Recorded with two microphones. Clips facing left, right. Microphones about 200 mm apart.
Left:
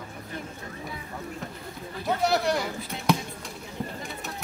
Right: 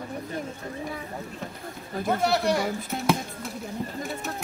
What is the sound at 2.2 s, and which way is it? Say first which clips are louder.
Speech: even; centre (ahead or behind).